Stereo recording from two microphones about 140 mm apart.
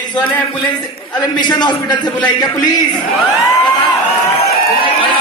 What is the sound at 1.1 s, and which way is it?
A man's voice, 30° left (ahead or behind).